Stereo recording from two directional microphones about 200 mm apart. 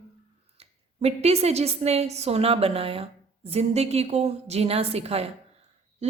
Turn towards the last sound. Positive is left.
turn(degrees=-30)  # may be behind; listen again after turning